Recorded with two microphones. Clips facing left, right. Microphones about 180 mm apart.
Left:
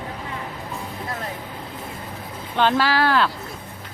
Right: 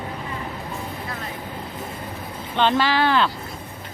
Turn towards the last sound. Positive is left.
turn(degrees=0)  # may be behind; listen again after turning